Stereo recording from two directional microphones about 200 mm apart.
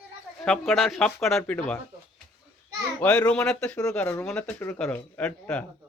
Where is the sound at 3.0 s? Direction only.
5° left (ahead or behind).